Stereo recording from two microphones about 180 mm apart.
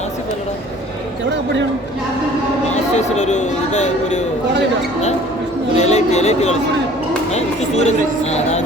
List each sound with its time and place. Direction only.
2.9 s speech: 40° left (ahead or behind)
5.7 s speech: 40° left (ahead or behind)